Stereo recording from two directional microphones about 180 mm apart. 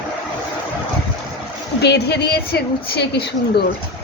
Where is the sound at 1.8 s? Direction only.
65° left (ahead or behind).